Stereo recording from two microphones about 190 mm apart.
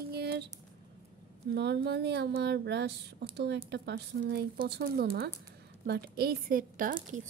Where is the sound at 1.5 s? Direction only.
60° right (ahead or behind).